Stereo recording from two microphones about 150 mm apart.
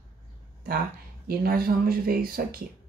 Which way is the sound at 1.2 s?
80° right.